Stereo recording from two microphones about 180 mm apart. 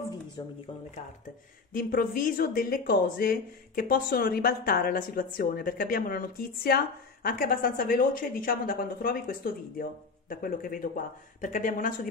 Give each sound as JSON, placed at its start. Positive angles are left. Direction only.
{"t": 0.4, "sound": "speech", "side_deg": 20}
{"t": 1.7, "sound": "speech", "side_deg": 50}